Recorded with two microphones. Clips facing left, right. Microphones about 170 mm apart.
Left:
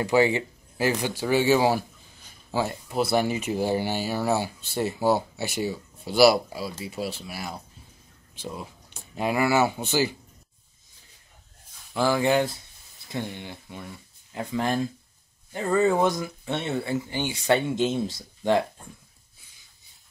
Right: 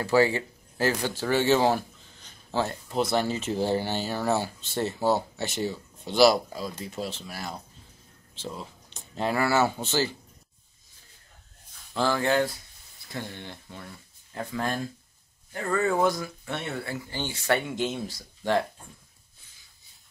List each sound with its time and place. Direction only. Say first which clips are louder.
0.0 s speech: left 1 dB; 20° left (ahead or behind)
11.9 s speech: left 3 dB; 15° left (ahead or behind)